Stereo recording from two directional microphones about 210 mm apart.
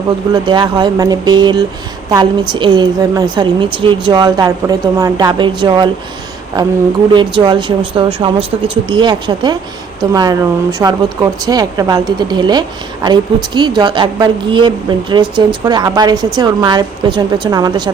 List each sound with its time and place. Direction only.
0.4 s speech: 20° right (ahead or behind)
7.1 s speech: 20° right (ahead or behind)